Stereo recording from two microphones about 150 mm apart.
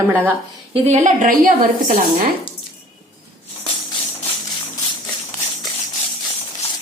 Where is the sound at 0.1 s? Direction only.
15° right (ahead or behind).